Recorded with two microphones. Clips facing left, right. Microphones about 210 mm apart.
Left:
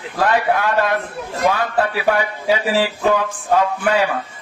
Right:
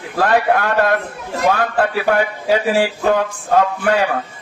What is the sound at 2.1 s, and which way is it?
Speech, 50° right (ahead or behind).